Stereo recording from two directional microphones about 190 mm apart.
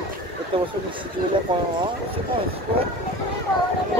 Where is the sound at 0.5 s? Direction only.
25° right (ahead or behind).